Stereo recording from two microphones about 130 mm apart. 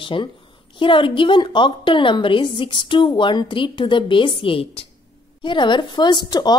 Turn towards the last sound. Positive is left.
turn(degrees=30)  # may be behind; listen again after turning